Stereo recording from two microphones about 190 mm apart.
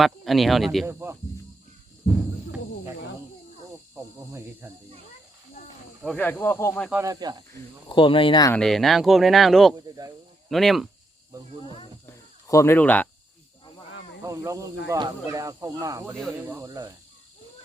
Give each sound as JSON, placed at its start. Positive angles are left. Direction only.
{"t": 0.0, "sound": "speech", "side_deg": 0}
{"t": 0.9, "sound": "speech", "side_deg": -15}
{"t": 3.7, "sound": "snake", "side_deg": -15}
{"t": 6.0, "sound": "speech", "side_deg": 5}
{"t": 6.9, "sound": "speech", "side_deg": -15}
{"t": 7.5, "sound": "speech", "side_deg": 25}
{"t": 8.5, "sound": "speech", "side_deg": 0}
{"t": 9.7, "sound": "speech", "side_deg": -20}
{"t": 10.5, "sound": "speech", "side_deg": 0}
{"t": 11.6, "sound": "speech", "side_deg": 30}
{"t": 12.0, "sound": "a sound", "side_deg": 15}
{"t": 14.3, "sound": "speech", "side_deg": -15}